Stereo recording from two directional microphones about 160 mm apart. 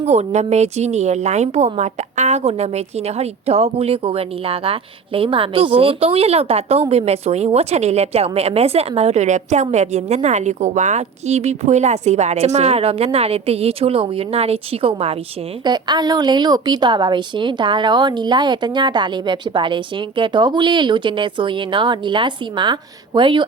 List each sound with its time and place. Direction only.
0.0 s a woman's voice: 45° right (ahead or behind)